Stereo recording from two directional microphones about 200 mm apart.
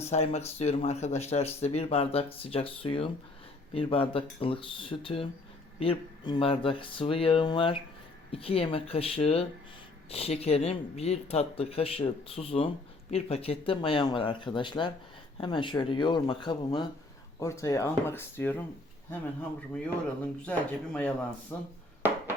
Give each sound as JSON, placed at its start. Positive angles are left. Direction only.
{"t": 0.0, "sound": "speech", "side_deg": 30}